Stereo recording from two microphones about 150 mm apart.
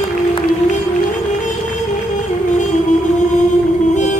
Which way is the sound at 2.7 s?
55° left (ahead or behind).